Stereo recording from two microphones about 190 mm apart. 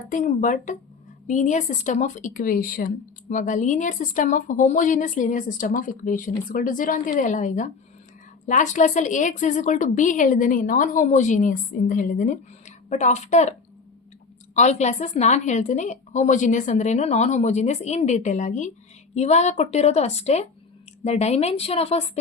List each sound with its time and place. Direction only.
0.1 s speech: 40° left (ahead or behind)
14.5 s speech: 40° left (ahead or behind)